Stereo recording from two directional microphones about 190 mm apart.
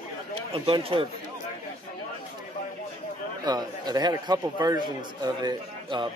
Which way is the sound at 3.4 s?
20° right (ahead or behind).